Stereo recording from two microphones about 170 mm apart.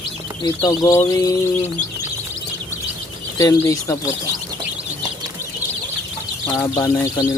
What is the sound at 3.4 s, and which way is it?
Speech, 20° left (ahead or behind).